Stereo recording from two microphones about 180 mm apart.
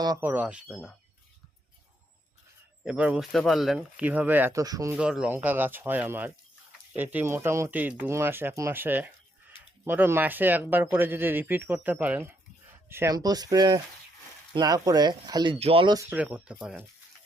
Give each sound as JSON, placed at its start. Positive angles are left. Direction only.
{"t": 0.0, "sound": "speech", "side_deg": -20}
{"t": 0.3, "sound": "speech", "side_deg": -5}
{"t": 2.8, "sound": "speech", "side_deg": -5}
{"t": 4.9, "sound": "speech", "side_deg": -5}
{"t": 16.0, "sound": "speech", "side_deg": -10}